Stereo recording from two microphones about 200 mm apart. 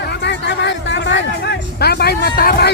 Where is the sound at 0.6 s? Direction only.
60° left (ahead or behind).